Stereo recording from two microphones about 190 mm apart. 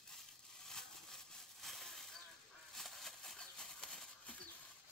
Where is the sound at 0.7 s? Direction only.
5° left (ahead or behind).